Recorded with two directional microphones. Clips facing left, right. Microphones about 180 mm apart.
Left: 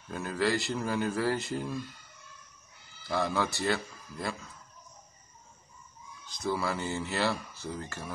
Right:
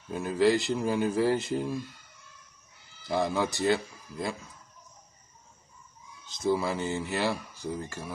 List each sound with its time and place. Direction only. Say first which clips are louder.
0.1 s speech: right 5 dB; 15° right (ahead or behind)
3.0 s speech: right 2 dB; 15° right (ahead or behind)
6.2 s speech: right 4 dB; 20° right (ahead or behind)